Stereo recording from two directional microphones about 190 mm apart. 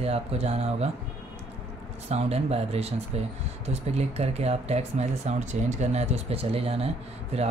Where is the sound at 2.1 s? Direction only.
35° right (ahead or behind).